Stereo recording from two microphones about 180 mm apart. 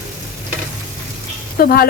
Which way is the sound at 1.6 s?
55° left (ahead or behind).